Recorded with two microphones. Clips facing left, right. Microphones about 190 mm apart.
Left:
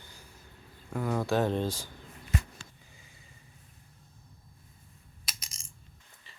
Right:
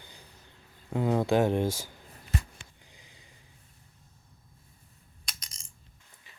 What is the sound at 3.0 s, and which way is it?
Snort, 90° right.